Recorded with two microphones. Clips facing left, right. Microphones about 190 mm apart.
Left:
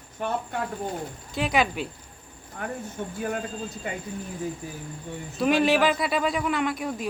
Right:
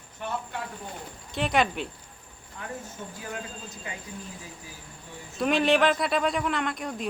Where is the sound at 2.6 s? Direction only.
55° left (ahead or behind).